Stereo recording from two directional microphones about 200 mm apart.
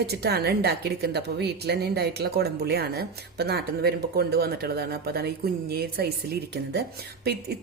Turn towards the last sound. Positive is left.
turn(degrees=-50)  # may be behind; listen again after turning